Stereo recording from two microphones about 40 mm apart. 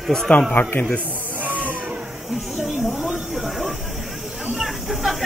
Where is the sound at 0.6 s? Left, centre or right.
Left.